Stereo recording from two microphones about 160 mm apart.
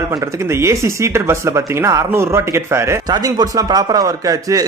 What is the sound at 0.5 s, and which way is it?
Speech, 15° right (ahead or behind).